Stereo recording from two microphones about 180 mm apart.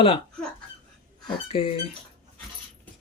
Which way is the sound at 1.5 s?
30° left (ahead or behind).